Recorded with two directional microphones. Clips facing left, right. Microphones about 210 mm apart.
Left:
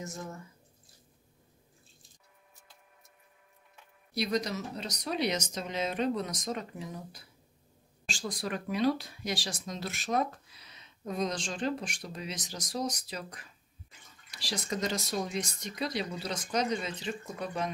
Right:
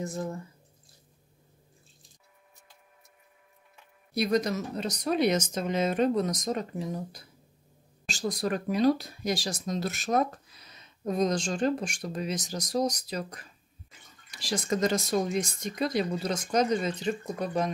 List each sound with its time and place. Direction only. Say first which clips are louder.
0.0 s speech: right 7 dB; 35° right (ahead or behind)
4.1 s speech: right 5 dB; 50° right (ahead or behind)
8.1 s speech: right 6 dB; 40° right (ahead or behind)